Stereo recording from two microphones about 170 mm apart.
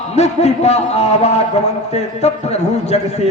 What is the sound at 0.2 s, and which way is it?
A man's voice, 40° left (ahead or behind).